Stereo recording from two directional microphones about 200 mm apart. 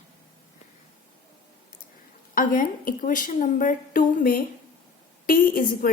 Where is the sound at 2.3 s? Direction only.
45° left (ahead or behind).